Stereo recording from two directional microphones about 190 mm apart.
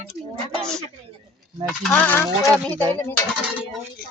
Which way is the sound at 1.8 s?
5° left (ahead or behind).